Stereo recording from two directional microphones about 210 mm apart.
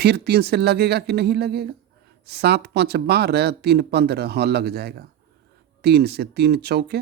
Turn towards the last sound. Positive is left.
turn(degrees=-50)  # may be behind; listen again after turning